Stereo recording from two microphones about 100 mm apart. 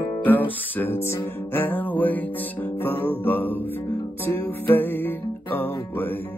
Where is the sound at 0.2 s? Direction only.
15° left (ahead or behind).